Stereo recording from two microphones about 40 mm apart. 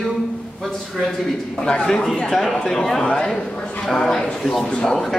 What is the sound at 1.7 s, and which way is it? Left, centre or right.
A man's voice, centre.